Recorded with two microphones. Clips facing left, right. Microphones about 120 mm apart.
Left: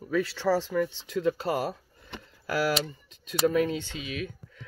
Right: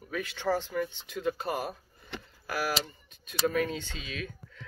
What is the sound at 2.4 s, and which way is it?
Speech, 55° left (ahead or behind).